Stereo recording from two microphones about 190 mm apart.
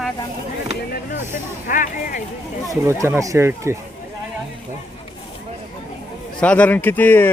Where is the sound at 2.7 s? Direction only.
15° right (ahead or behind).